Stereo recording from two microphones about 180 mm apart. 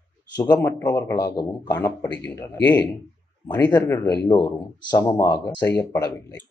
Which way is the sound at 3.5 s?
10° left (ahead or behind).